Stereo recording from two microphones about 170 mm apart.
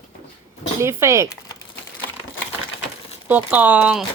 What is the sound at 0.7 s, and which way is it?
Speech, 15° right (ahead or behind).